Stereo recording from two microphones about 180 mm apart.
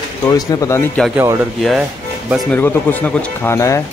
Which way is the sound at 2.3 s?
Centre (ahead or behind).